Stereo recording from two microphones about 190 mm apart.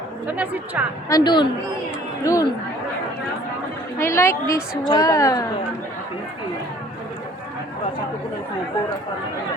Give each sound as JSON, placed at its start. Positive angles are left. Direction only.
{"t": 0.3, "sound": "a woman's voice", "side_deg": -10}
{"t": 1.1, "sound": "a man's voice", "side_deg": 25}
{"t": 3.9, "sound": "a woman's voice", "side_deg": 15}